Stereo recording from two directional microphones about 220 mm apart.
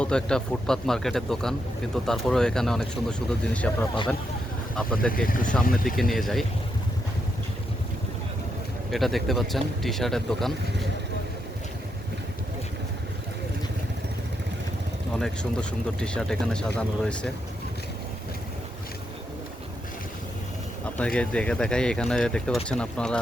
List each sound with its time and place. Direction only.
0.0 s speech: 5° left (ahead or behind)
5.1 s speech: 40° left (ahead or behind)
5.4 s speech: 5° left (ahead or behind)
5.6 s speech: 40° left (ahead or behind)
6.0 s speech: centre (ahead or behind)
8.9 s speech: centre (ahead or behind)
15.2 s speech: 5° left (ahead or behind)
21.0 s speech: 5° left (ahead or behind)